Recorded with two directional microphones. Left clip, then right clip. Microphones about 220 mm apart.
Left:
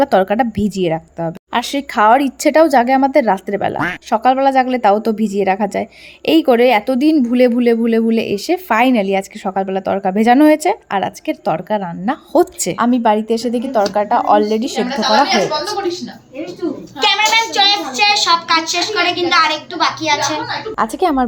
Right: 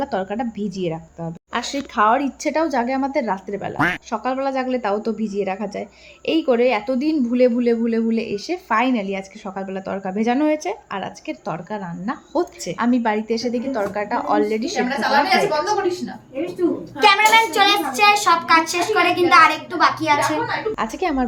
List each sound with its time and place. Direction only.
0.0 s a woman's voice: 50° left (ahead or behind)
12.7 s speech: 30° left (ahead or behind)
17.0 s a child's voice: centre (ahead or behind)
20.7 s speech: 25° left (ahead or behind)